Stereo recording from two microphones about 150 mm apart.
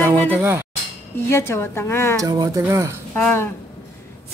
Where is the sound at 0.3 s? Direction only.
15° right (ahead or behind).